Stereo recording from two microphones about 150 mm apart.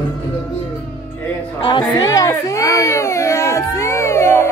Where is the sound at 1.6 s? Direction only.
30° left (ahead or behind).